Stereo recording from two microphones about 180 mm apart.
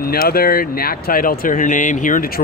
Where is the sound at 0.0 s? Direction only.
55° left (ahead or behind).